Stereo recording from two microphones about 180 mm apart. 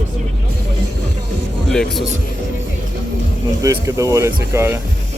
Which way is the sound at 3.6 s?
15° right (ahead or behind).